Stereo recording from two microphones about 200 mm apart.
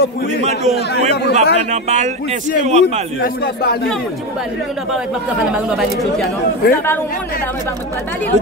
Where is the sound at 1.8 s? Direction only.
35° right (ahead or behind).